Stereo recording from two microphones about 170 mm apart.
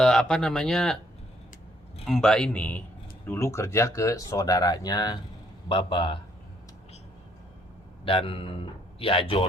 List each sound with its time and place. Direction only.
0.0 s speech: 5° left (ahead or behind)
2.0 s a man's voice: centre (ahead or behind); by 6.1 s 30° left (ahead or behind)
8.0 s a man's voice: 30° left (ahead or behind)